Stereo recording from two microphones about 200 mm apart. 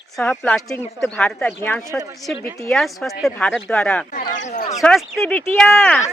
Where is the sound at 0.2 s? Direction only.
5° left (ahead or behind).